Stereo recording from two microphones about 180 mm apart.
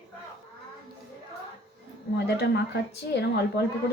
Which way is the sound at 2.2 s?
70° left (ahead or behind).